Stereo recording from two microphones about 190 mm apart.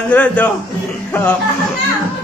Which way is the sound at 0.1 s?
5° left (ahead or behind).